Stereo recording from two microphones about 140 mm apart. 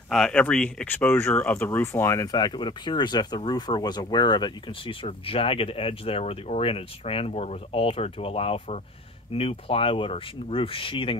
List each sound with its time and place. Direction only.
0.1 s speech: 5° left (ahead or behind); by 11.1 s 40° left (ahead or behind)